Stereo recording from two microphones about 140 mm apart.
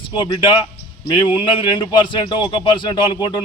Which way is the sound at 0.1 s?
35° left (ahead or behind).